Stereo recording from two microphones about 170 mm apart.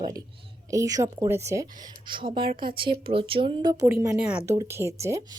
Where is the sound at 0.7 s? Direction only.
20° right (ahead or behind).